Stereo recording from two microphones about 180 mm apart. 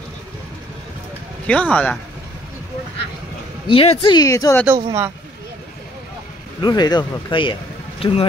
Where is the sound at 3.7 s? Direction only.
30° left (ahead or behind).